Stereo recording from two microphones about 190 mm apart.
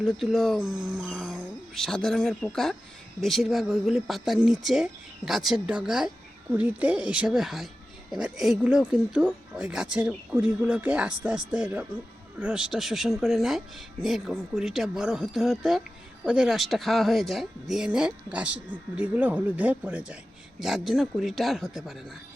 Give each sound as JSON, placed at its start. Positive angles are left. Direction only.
{"t": 0.0, "sound": "speech", "side_deg": 0}